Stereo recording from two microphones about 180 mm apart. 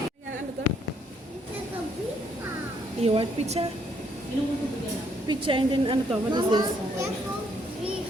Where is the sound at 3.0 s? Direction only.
35° right (ahead or behind).